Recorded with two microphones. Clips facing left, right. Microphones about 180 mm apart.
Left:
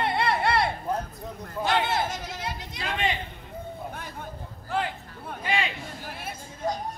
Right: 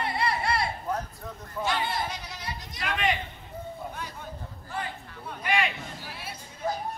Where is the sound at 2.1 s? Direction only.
50° left (ahead or behind).